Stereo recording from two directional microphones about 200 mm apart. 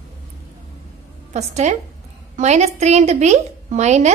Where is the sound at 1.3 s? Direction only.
35° right (ahead or behind).